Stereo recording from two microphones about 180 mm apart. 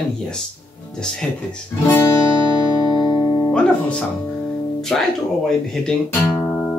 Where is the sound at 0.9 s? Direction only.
5° left (ahead or behind).